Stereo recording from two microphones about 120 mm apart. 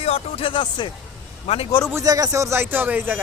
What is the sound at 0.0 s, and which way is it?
Speech, 55° left (ahead or behind).